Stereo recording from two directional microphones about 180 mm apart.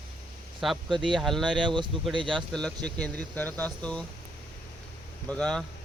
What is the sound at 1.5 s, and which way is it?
Speech, 25° right (ahead or behind).